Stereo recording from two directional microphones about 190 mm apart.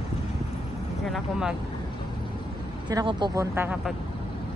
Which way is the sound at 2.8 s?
25° right (ahead or behind).